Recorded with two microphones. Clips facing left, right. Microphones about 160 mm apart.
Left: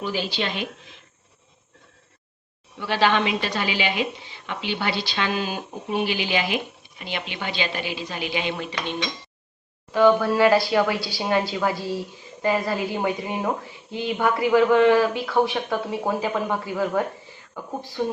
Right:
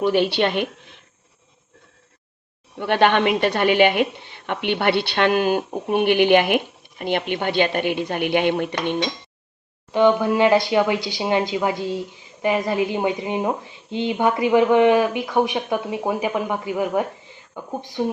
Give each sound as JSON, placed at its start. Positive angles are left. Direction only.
{"t": 0.0, "sound": "speech", "side_deg": -60}
{"t": 2.7, "sound": "speech", "side_deg": -55}
{"t": 9.9, "sound": "speech", "side_deg": -20}